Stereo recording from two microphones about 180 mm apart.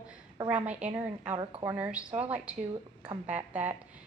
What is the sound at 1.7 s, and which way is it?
A woman's voice, 5° right (ahead or behind).